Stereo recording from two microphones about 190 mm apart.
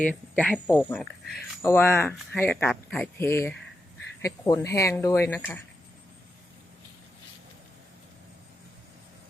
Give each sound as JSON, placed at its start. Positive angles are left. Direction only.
{"t": 0.0, "sound": "speech", "side_deg": 5}